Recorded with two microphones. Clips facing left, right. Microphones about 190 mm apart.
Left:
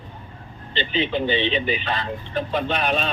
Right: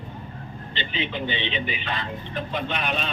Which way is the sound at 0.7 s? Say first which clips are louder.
Left 7 dB; 35° left (ahead or behind).